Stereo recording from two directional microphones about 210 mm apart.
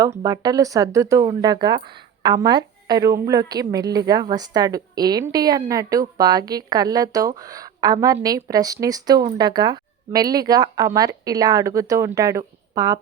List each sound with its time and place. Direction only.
0.2 s speech: 20° right (ahead or behind)